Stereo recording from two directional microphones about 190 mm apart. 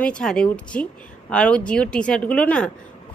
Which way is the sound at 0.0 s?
5° left (ahead or behind).